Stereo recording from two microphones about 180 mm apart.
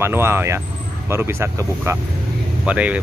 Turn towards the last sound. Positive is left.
turn(degrees=-5)  # may be behind; listen again after turning